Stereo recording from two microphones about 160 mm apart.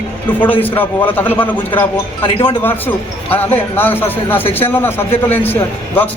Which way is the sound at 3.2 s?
15° left (ahead or behind).